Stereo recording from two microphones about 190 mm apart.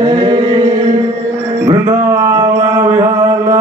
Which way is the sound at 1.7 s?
15° right (ahead or behind).